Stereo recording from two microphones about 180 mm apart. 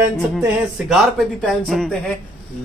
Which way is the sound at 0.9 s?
Centre (ahead or behind).